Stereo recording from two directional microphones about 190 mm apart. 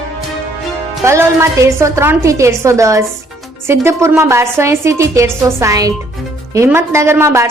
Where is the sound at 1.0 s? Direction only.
15° right (ahead or behind).